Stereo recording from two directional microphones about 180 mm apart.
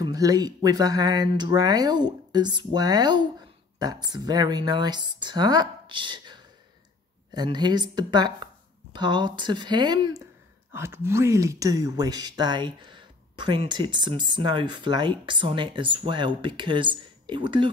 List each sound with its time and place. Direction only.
0.0 s speech: 20° right (ahead or behind)
10.7 s speech: 15° right (ahead or behind)